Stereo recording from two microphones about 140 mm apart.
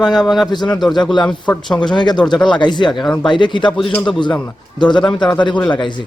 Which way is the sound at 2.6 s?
35° left (ahead or behind).